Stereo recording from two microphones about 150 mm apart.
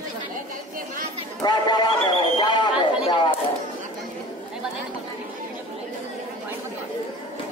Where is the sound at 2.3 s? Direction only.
30° left (ahead or behind).